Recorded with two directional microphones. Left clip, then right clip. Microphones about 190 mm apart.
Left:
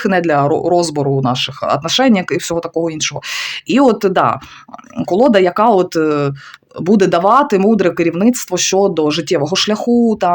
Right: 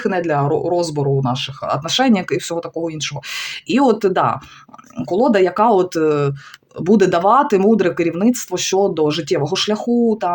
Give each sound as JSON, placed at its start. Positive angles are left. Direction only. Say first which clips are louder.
{"t": 0.0, "sound": "speech", "louder": "left 5 dB", "side_deg": 35}